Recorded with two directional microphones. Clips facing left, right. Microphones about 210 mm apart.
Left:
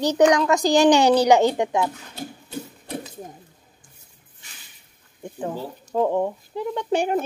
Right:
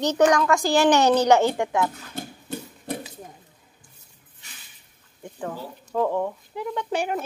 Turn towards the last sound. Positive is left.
turn(degrees=30)  # may be behind; listen again after turning